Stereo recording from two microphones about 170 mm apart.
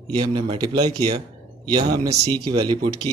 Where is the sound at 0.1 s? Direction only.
30° right (ahead or behind).